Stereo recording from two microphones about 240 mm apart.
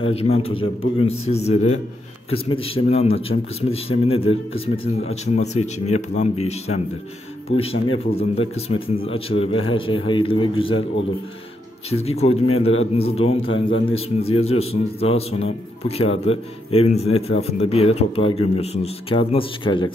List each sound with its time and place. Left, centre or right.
0.0 s a man's voice: left
11.9 s a man's voice: left